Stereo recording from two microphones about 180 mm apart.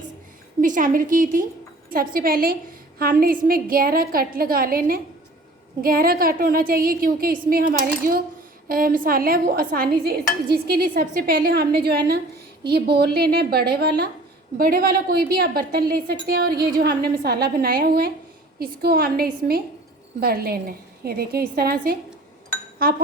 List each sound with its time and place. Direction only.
0.6 s a woman's voice: 45° right (ahead or behind)